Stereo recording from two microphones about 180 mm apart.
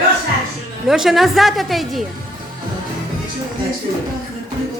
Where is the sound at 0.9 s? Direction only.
Centre (ahead or behind).